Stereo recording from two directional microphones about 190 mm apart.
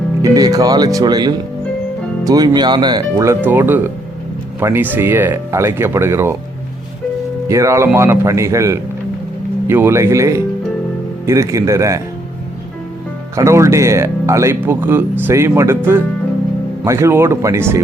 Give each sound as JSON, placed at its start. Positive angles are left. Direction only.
{"t": 0.2, "sound": "speech", "side_deg": -20}
{"t": 7.4, "sound": "speech", "side_deg": -15}
{"t": 13.3, "sound": "speech", "side_deg": -15}